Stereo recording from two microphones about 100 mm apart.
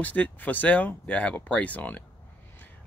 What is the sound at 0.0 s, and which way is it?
Speech, 15° left (ahead or behind).